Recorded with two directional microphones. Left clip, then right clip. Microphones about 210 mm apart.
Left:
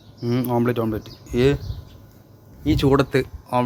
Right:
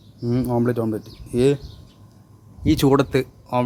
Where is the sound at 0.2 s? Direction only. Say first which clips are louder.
Even; 10° right (ahead or behind).